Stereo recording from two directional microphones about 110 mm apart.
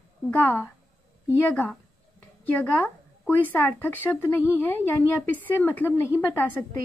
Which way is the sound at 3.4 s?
20° left (ahead or behind).